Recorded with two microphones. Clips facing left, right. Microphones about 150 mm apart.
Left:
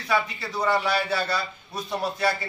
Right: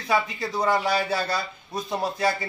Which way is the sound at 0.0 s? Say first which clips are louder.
Right 1 dB; 15° right (ahead or behind).